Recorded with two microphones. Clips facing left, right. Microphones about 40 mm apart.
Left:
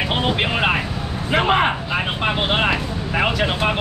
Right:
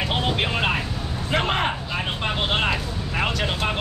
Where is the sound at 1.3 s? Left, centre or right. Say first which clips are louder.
Left 6 dB; centre.